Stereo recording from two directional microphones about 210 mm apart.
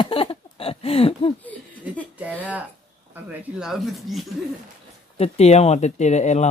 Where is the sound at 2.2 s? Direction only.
5° right (ahead or behind).